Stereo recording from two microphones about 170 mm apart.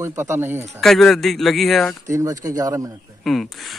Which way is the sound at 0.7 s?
Centre (ahead or behind).